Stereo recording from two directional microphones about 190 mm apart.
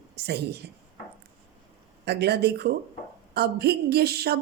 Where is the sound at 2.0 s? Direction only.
60° right (ahead or behind).